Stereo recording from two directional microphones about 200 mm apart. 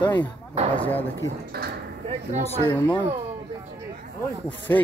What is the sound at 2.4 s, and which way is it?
Speech, 10° left (ahead or behind).